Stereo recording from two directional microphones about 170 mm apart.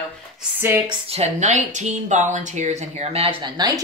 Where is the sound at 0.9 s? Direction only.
35° right (ahead or behind).